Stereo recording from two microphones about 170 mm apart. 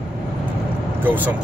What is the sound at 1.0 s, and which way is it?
Speech, 10° right (ahead or behind).